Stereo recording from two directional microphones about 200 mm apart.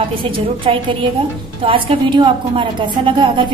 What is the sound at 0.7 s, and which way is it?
A woman's voice, 30° right (ahead or behind).